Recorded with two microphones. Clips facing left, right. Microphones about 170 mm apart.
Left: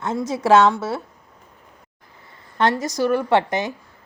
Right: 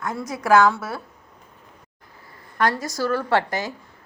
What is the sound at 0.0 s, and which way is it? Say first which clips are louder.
Speech: left 5 dB; 25° left (ahead or behind).